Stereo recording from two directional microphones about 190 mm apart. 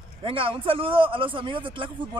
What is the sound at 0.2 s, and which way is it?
A man's voice, 25° right (ahead or behind).